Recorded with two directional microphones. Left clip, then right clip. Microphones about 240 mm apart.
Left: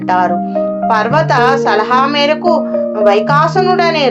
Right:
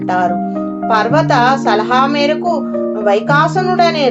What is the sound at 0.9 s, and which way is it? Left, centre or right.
Speech, left.